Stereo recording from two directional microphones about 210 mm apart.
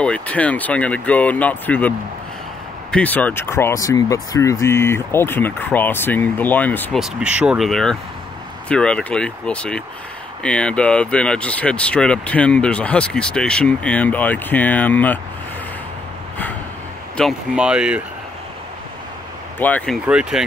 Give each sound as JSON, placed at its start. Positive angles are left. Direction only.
{"t": 0.0, "sound": "speech", "side_deg": 5}
{"t": 17.2, "sound": "speech", "side_deg": 0}
{"t": 19.6, "sound": "speech", "side_deg": 5}
{"t": 20.1, "sound": "speech", "side_deg": -5}